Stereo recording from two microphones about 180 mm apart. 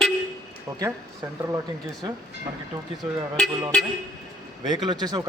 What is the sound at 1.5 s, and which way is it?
Speech, 20° right (ahead or behind).